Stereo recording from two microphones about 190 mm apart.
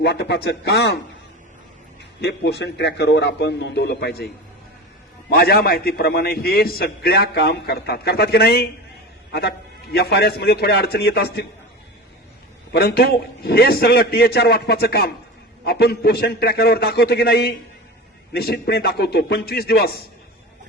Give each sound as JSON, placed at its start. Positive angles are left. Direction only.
{"t": 0.0, "sound": "a man's voice", "side_deg": 60}
{"t": 2.2, "sound": "a man's voice", "side_deg": 65}
{"t": 5.3, "sound": "a man's voice", "side_deg": 55}
{"t": 12.7, "sound": "a man's voice", "side_deg": 55}